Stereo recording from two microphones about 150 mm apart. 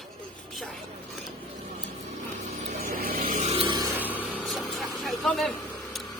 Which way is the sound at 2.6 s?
65° right (ahead or behind).